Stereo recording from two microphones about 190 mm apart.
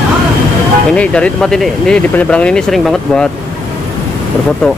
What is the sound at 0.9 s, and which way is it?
Speech, 5° left (ahead or behind).